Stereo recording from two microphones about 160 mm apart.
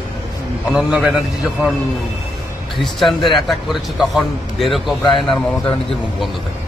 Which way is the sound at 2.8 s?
Centre (ahead or behind).